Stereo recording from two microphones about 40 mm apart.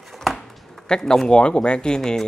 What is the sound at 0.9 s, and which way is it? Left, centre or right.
Speech, centre.